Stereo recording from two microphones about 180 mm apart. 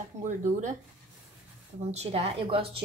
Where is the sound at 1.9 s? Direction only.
35° right (ahead or behind).